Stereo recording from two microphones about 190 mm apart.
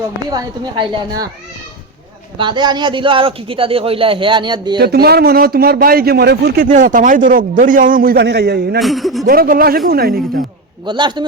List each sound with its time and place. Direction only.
0.3 s speech: 20° right (ahead or behind)
2.4 s speech: 25° right (ahead or behind)
4.8 s speech: 55° right (ahead or behind)
8.8 s speech: centre (ahead or behind)
9.2 s speech: 50° right (ahead or behind)
10.8 s speech: 25° right (ahead or behind)